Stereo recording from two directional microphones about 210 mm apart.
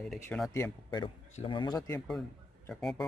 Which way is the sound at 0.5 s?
15° left (ahead or behind).